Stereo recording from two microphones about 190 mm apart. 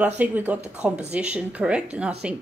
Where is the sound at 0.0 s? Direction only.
10° right (ahead or behind).